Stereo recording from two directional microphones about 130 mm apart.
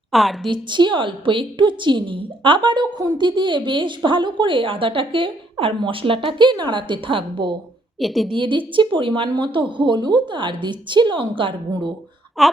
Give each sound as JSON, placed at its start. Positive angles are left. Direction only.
{"t": 0.1, "sound": "a woman's voice", "side_deg": 0}
{"t": 0.4, "sound": "a woman's voice", "side_deg": -35}
{"t": 7.9, "sound": "a woman's voice", "side_deg": 0}
{"t": 8.3, "sound": "a woman's voice", "side_deg": -40}
{"t": 12.4, "sound": "a woman's voice", "side_deg": 0}